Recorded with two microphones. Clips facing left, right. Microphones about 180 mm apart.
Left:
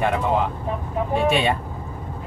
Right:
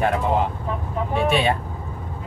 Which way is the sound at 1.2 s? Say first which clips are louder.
Even; centre (ahead or behind).